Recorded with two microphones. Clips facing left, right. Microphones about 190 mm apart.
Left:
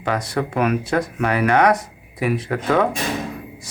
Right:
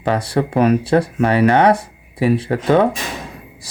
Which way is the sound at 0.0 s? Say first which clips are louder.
Right 4 dB; 30° right (ahead or behind).